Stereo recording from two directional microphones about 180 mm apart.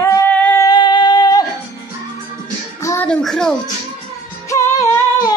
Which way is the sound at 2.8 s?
15° left (ahead or behind).